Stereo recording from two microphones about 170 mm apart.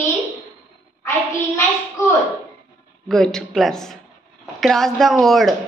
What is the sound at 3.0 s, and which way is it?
A man's voice, centre (ahead or behind).